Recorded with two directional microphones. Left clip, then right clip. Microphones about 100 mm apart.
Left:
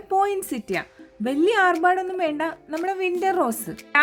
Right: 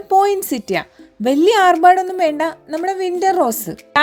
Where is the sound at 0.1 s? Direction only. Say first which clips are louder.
Right 8 dB; 40° right (ahead or behind).